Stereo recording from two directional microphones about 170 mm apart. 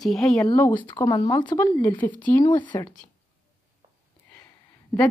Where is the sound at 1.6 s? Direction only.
10° left (ahead or behind).